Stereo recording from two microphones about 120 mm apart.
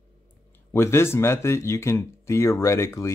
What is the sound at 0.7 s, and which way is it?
Speech, 20° left (ahead or behind).